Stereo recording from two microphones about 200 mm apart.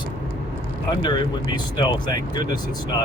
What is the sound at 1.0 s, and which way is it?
Speech, 20° left (ahead or behind).